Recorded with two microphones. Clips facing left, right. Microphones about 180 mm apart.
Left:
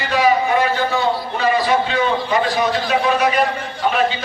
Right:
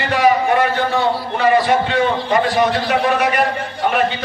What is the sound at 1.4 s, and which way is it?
A man's voice, 60° right (ahead or behind).